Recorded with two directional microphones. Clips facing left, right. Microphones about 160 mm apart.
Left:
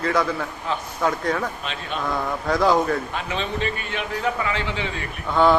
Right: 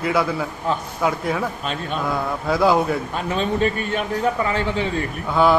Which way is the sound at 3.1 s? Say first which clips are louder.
Right 5 dB; 45° right (ahead or behind).